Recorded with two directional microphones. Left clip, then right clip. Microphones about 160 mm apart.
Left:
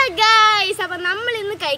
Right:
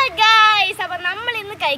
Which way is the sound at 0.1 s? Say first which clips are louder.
Right 1 dB; 30° left (ahead or behind).